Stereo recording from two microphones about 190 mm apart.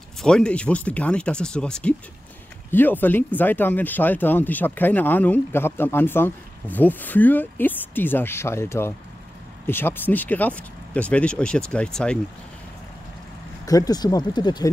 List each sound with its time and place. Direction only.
0.2 s speech: 5° left (ahead or behind)
13.7 s speech: 20° left (ahead or behind)